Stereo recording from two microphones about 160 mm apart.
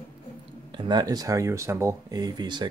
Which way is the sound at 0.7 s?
25° right (ahead or behind).